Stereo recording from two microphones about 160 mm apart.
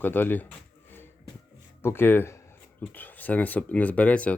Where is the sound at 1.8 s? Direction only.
15° left (ahead or behind).